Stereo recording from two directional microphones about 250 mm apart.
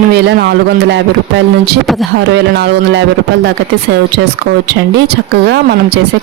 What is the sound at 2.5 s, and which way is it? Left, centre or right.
Speech, right.